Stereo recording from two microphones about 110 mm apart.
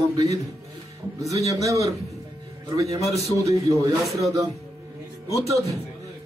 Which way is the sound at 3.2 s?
30° right (ahead or behind).